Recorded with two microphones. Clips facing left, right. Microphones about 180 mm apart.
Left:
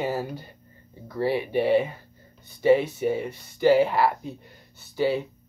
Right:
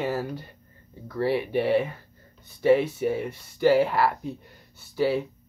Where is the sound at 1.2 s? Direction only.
Centre (ahead or behind).